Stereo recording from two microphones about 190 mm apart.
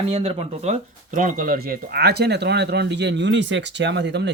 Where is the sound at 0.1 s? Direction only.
35° right (ahead or behind).